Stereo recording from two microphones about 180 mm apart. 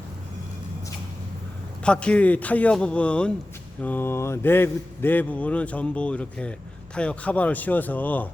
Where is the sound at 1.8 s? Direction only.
5° left (ahead or behind).